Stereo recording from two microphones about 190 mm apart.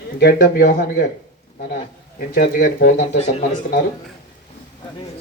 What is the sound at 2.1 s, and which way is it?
Speech, 50° left (ahead or behind).